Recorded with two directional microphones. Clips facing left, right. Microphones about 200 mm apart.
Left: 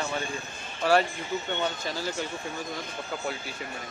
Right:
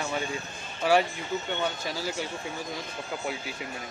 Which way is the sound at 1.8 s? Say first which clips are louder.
Even; 10° right (ahead or behind).